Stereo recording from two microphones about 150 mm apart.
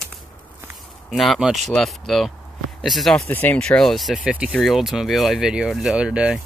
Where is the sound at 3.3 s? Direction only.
10° left (ahead or behind); by 6.4 s 5° right (ahead or behind).